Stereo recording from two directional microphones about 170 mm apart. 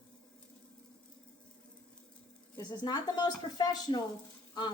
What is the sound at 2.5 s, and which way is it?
Speech, 25° left (ahead or behind).